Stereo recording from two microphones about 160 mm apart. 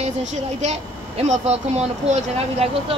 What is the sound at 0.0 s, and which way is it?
Speech, 45° right (ahead or behind).